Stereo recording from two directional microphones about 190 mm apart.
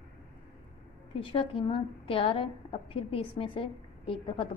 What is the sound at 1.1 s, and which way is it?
A woman's voice, 30° left (ahead or behind).